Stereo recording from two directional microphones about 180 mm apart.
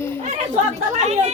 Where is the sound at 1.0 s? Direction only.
40° right (ahead or behind).